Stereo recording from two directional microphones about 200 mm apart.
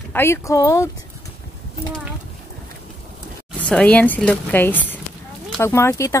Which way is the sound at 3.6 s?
5° left (ahead or behind).